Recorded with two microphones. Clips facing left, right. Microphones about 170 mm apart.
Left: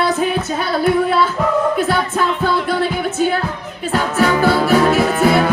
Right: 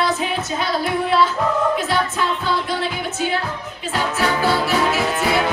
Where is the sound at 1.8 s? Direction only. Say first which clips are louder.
Left 4 dB; 50° left (ahead or behind).